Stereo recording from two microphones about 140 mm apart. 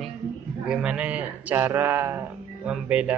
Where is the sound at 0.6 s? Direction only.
10° right (ahead or behind).